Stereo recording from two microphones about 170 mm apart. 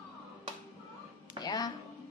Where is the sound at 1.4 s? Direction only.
20° left (ahead or behind).